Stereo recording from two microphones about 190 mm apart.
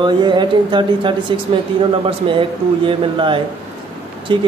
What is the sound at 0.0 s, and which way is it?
Speech, 25° right (ahead or behind).